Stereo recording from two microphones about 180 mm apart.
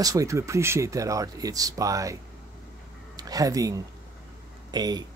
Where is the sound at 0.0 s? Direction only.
20° right (ahead or behind).